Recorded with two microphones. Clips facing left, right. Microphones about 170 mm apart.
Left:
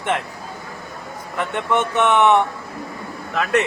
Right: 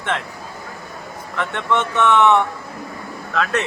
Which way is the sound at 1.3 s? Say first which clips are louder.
Even; 15° left (ahead or behind).